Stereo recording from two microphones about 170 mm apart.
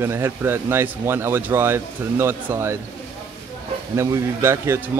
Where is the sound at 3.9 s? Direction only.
15° right (ahead or behind).